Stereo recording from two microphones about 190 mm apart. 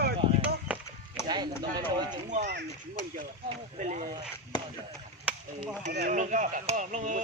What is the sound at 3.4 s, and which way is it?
Speech, 40° right (ahead or behind).